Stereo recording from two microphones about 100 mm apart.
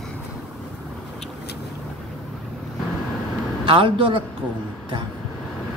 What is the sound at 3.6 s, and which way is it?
Speech, 55° right (ahead or behind).